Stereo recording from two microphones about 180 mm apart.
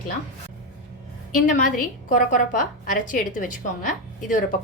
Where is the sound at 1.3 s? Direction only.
45° left (ahead or behind).